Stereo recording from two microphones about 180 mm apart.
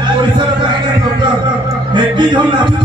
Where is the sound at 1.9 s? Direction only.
25° right (ahead or behind).